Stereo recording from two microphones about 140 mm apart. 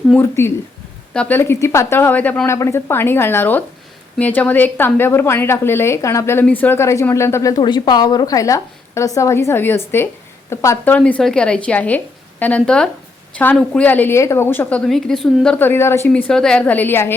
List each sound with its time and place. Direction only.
0.2 s a woman's voice: 15° left (ahead or behind)
10.9 s a woman's voice: 10° left (ahead or behind)
15.5 s a woman's voice: 15° left (ahead or behind)